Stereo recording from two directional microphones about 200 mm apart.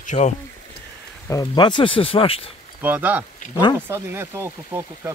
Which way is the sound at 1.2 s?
15° left (ahead or behind).